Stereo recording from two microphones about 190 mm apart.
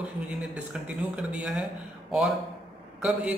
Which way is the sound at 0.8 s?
5° right (ahead or behind).